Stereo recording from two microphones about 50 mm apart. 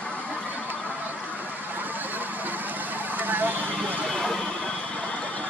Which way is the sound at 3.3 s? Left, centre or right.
Right.